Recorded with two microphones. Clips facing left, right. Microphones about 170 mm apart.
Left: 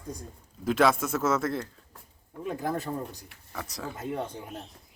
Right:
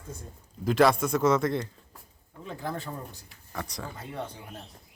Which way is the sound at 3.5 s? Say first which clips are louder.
Even; 5° left (ahead or behind).